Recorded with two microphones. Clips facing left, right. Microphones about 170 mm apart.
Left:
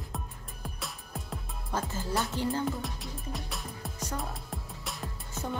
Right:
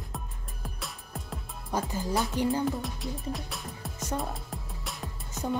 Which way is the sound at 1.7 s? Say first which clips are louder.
Right 3 dB; 15° right (ahead or behind).